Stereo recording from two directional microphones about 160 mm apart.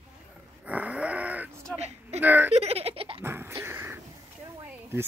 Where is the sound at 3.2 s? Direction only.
15° right (ahead or behind).